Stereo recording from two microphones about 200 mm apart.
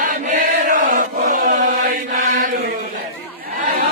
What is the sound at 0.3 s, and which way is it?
Chant, 40° right (ahead or behind).